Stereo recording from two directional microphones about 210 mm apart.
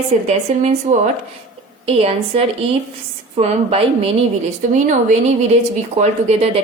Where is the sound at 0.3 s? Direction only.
35° right (ahead or behind).